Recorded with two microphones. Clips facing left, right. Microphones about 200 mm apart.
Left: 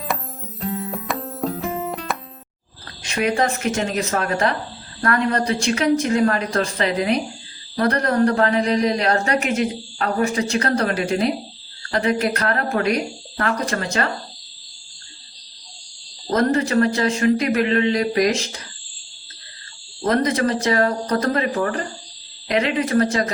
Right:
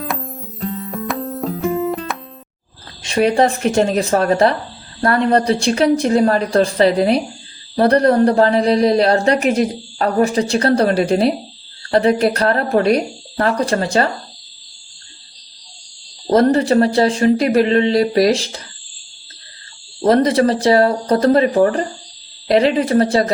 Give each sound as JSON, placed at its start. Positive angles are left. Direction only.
{"t": 0.0, "sound": "music", "side_deg": 0}
{"t": 3.0, "sound": "speech", "side_deg": -30}
{"t": 16.3, "sound": "speech", "side_deg": -30}
{"t": 20.1, "sound": "speech", "side_deg": -30}